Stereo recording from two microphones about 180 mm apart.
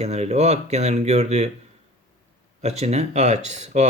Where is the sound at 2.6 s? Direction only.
35° right (ahead or behind).